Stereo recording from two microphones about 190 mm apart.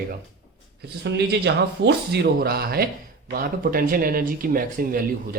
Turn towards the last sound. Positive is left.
turn(degrees=-50)  # may be behind; listen again after turning